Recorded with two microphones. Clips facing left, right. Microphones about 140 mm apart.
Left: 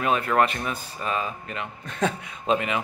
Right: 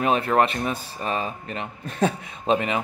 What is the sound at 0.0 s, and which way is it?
Speech, 35° right (ahead or behind).